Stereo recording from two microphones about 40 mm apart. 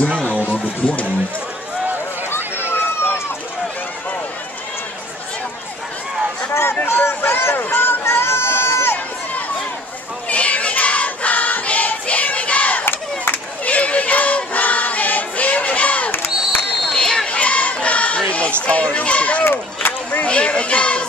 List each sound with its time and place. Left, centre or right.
2.7 s run: left
6.9 s speech: left
7.5 s speech: left
10.2 s choir: left
12.8 s crowd: left
13.7 s choir: left
16.1 s crowd: left
16.9 s crowd: centre
17.3 s crowd: left
18.7 s speech: left
19.4 s a sound: left
20.2 s a child's voice: left